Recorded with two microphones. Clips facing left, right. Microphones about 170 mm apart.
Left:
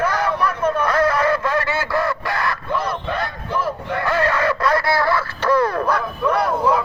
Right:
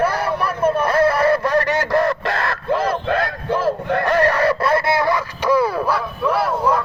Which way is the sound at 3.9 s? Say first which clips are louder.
Right 3 dB; 45° right (ahead or behind).